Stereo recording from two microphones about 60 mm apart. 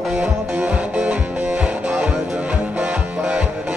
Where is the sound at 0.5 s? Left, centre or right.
Right.